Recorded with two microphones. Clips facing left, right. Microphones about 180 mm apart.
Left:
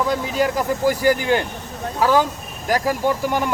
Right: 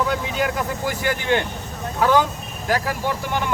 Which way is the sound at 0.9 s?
40° left (ahead or behind).